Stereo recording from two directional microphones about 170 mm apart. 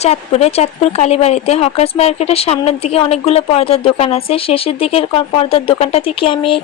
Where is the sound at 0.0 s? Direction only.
40° left (ahead or behind).